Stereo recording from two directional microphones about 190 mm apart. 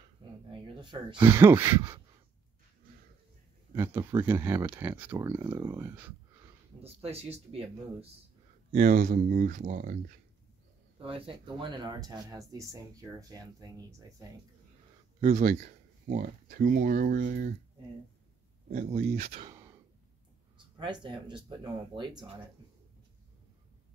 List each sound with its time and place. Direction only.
0.5 s speech: 25° right (ahead or behind)
3.7 s speech: 15° right (ahead or behind)
6.8 s speech: 30° right (ahead or behind)
8.7 s speech: 45° right (ahead or behind)
11.0 s speech: 30° right (ahead or behind)
15.1 s speech: 35° right (ahead or behind)
18.7 s speech: 40° right (ahead or behind)
20.5 s speech: 25° right (ahead or behind)